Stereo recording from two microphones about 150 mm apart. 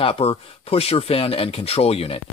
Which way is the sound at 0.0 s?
40° left (ahead or behind).